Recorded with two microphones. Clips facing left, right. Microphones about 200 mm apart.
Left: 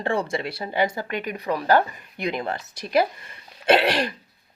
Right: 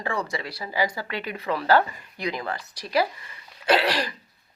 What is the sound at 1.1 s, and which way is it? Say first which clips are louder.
Speech: left 3 dB; 45° left (ahead or behind).